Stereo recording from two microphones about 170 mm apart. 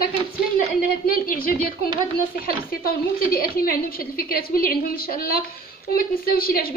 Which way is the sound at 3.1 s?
60° left (ahead or behind).